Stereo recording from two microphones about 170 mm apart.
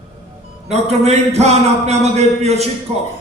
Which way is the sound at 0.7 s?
40° right (ahead or behind).